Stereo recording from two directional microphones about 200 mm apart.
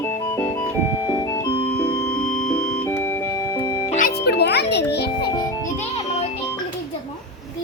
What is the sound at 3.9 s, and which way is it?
Music, 40° left (ahead or behind).